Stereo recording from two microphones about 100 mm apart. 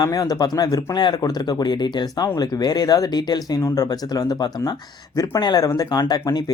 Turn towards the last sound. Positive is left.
turn(degrees=40)  # may be behind; listen again after turning